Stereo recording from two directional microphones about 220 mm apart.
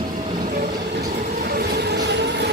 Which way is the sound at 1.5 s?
50° right (ahead or behind).